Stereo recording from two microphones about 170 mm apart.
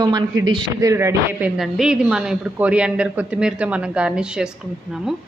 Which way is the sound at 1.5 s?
5° right (ahead or behind).